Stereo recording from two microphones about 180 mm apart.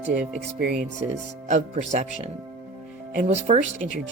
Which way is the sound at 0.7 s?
50° right (ahead or behind).